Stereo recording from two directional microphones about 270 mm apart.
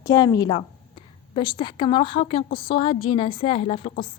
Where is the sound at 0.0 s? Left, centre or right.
Centre.